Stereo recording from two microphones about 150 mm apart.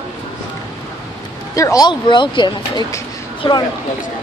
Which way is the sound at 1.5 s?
20° left (ahead or behind).